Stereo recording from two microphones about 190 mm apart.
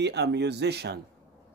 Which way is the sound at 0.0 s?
65° right (ahead or behind).